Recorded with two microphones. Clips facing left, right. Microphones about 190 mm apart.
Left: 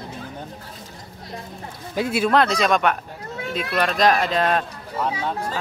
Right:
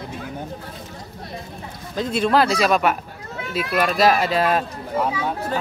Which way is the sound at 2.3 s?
5° right (ahead or behind).